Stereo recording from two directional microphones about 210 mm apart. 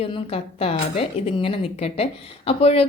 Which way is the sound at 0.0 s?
25° left (ahead or behind).